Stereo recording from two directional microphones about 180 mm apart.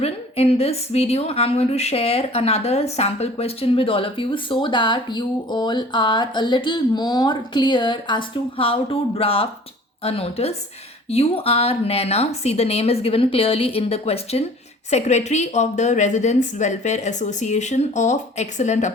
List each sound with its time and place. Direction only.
0.0 s a woman's voice: 35° left (ahead or behind)